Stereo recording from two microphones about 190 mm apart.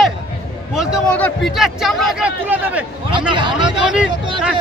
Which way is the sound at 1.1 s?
5° left (ahead or behind).